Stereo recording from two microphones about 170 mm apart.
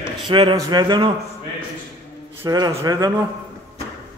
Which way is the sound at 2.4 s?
20° right (ahead or behind).